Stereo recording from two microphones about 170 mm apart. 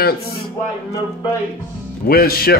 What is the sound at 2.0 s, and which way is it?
Speech, 65° left (ahead or behind).